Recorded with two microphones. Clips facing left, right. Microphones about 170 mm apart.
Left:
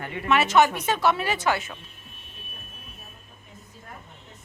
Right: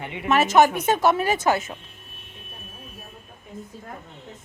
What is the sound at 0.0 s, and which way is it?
Speech, 20° right (ahead or behind).